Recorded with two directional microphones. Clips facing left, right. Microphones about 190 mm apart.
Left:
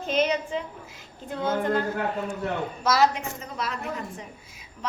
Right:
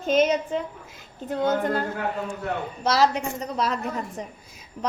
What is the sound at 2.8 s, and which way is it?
Speech, 30° right (ahead or behind).